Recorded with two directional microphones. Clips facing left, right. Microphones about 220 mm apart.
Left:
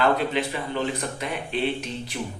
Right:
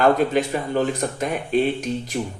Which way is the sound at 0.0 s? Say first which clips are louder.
Right 5 dB; 45° right (ahead or behind).